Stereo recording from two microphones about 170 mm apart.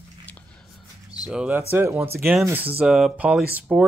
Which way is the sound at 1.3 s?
10° right (ahead or behind).